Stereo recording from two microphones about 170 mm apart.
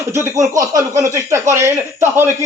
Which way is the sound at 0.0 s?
15° right (ahead or behind).